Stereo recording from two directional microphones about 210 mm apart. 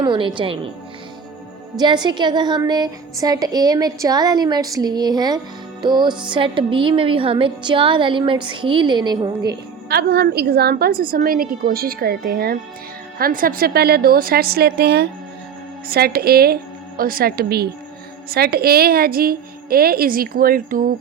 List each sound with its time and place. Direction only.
0.0 s a woman's voice: 25° right (ahead or behind)
1.7 s a woman's voice: 20° right (ahead or behind)
9.4 s a woman's voice: 50° right (ahead or behind)